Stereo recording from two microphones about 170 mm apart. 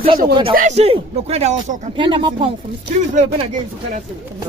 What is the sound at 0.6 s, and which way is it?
Speech, 40° right (ahead or behind).